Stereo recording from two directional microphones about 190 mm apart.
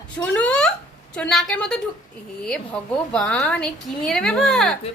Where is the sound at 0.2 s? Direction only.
5° left (ahead or behind).